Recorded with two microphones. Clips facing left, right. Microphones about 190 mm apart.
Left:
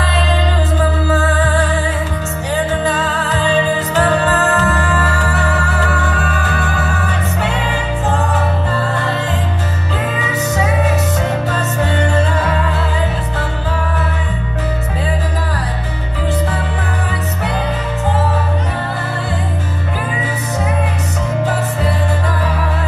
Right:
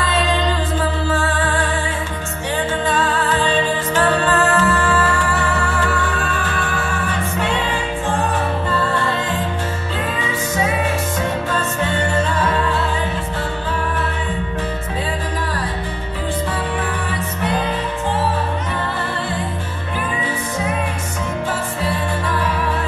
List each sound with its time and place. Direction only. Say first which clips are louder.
0.7 s music: left 4 dB; 40° left (ahead or behind)
2.8 s music: left 1 dB; 40° left (ahead or behind)
11.8 s music: left 5 dB; 40° left (ahead or behind)